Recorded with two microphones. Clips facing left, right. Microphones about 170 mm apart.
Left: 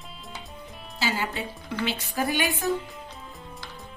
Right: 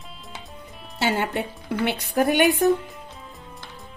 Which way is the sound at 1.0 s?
60° right (ahead or behind).